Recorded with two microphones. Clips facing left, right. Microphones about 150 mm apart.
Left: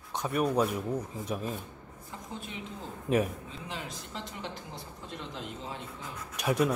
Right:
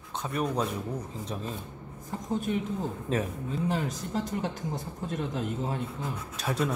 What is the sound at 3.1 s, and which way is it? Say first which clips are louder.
Speech: left 3 dB; 15° left (ahead or behind).